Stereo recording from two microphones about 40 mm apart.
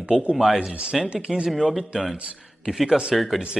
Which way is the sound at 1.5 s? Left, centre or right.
Centre.